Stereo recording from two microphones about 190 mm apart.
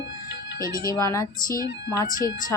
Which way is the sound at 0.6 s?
50° left (ahead or behind).